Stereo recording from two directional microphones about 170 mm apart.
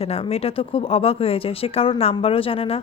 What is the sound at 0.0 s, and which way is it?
Speech, 35° left (ahead or behind).